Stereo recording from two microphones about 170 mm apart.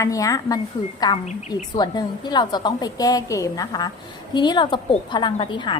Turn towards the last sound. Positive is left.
turn(degrees=30)  # may be behind; listen again after turning